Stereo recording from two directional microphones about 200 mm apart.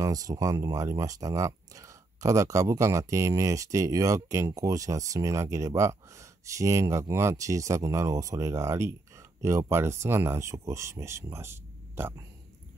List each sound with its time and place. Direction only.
0.0 s speech: 15° right (ahead or behind)